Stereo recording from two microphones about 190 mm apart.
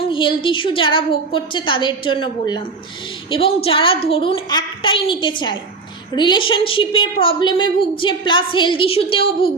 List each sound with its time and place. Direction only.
0.1 s a woman's voice: 25° left (ahead or behind)